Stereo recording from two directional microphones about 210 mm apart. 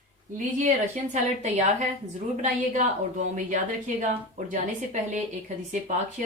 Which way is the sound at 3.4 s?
35° right (ahead or behind).